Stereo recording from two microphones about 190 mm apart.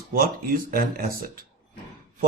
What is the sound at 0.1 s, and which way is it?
Speech, 50° right (ahead or behind).